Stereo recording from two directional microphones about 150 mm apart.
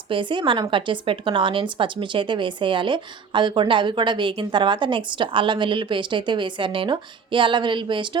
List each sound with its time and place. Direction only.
0.1 s speech: 35° right (ahead or behind)